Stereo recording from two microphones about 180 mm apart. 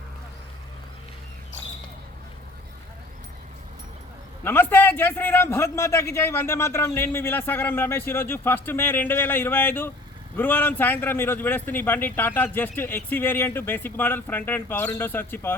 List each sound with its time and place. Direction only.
4.4 s a man's voice: 10° left (ahead or behind)